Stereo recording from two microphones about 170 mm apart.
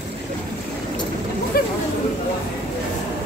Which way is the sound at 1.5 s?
65° left (ahead or behind).